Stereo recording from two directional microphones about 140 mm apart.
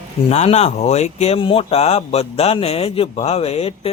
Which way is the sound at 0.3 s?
50° left (ahead or behind).